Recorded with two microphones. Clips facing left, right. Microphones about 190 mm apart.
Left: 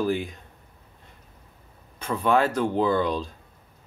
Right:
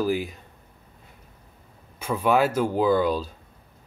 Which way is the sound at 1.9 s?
10° right (ahead or behind).